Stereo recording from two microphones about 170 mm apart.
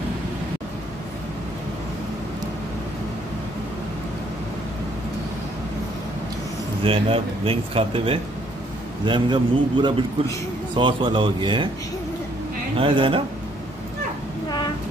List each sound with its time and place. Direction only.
6.8 s a man's voice: 30° right (ahead or behind)
12.7 s speech: 30° right (ahead or behind)